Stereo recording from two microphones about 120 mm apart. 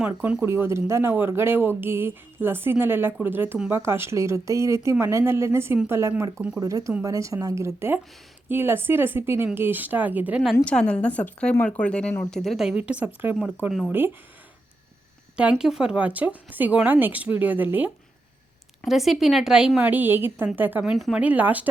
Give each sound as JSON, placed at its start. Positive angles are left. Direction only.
{"t": 0.1, "sound": "speech", "side_deg": -15}
{"t": 10.7, "sound": "a woman's voice", "side_deg": 10}
{"t": 13.7, "sound": "speech", "side_deg": 0}
{"t": 13.9, "sound": "speech", "side_deg": -15}
{"t": 15.4, "sound": "speech", "side_deg": -10}
{"t": 18.9, "sound": "speech", "side_deg": 0}
{"t": 20.9, "sound": "speech", "side_deg": -5}